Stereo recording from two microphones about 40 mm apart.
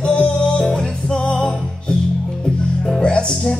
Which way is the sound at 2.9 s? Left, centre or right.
Left.